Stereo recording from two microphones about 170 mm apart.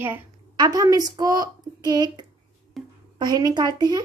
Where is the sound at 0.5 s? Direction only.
25° right (ahead or behind).